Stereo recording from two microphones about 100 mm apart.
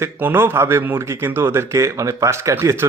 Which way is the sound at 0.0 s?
20° right (ahead or behind).